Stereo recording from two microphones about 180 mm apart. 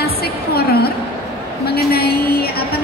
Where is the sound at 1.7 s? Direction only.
60° left (ahead or behind).